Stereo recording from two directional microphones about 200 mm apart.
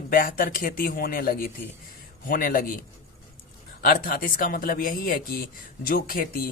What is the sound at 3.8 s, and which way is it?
Speech, 45° left (ahead or behind).